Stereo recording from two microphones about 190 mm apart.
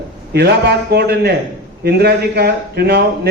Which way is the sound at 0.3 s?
60° right (ahead or behind).